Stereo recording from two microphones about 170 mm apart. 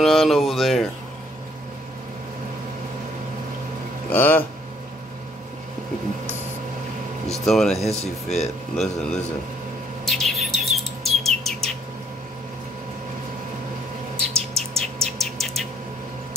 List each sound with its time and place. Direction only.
0.0 s speech: centre (ahead or behind)
4.1 s speech: 10° left (ahead or behind)
7.4 s speech: centre (ahead or behind)
8.0 s speech: 40° left (ahead or behind)
8.7 s speech: 5° left (ahead or behind)
10.0 s bird: centre (ahead or behind)
14.1 s bird: 35° right (ahead or behind)
15.0 s bird: centre (ahead or behind)